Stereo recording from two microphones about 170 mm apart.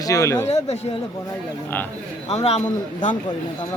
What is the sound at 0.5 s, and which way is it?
Speech, 40° left (ahead or behind).